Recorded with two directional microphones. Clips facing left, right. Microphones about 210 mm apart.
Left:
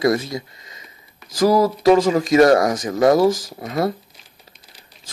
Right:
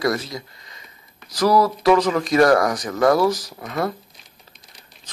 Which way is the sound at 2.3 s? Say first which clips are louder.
Left 2 dB; 20° left (ahead or behind).